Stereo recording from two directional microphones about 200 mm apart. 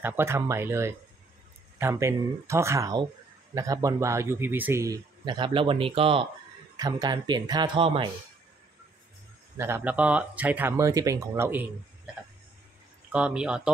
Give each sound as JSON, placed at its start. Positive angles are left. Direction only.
{"t": 0.0, "sound": "a man's voice", "side_deg": -10}
{"t": 9.6, "sound": "a man's voice", "side_deg": -10}
{"t": 13.1, "sound": "speech", "side_deg": -5}